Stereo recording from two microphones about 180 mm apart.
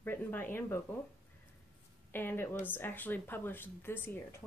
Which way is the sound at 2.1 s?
10° left (ahead or behind).